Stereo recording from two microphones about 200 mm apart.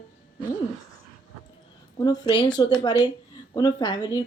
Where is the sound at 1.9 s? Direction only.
20° left (ahead or behind).